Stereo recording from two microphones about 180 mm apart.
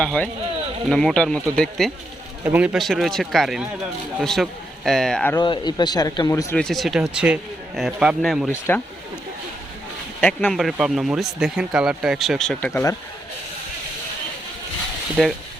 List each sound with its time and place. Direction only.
0.0 s speech: 5° left (ahead or behind)
2.4 s a man's voice: 10° right (ahead or behind)
2.7 s speech: centre (ahead or behind)
5.3 s speech: 25° left (ahead or behind)
6.6 s speech: centre (ahead or behind)
10.2 s speech: 5° left (ahead or behind)
15.2 s speech: centre (ahead or behind)